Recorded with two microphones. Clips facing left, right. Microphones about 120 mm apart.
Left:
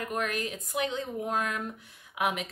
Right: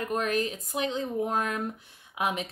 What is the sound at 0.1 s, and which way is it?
Speech, 30° right (ahead or behind).